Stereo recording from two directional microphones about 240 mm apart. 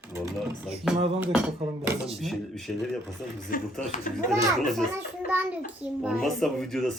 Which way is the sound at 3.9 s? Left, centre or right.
Left.